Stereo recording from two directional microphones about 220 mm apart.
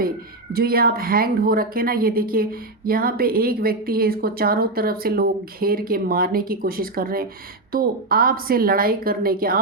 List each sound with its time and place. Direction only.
0.5 s speech: 45° right (ahead or behind)